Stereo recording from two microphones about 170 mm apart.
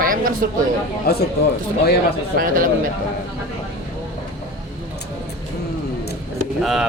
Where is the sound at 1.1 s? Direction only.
70° left (ahead or behind).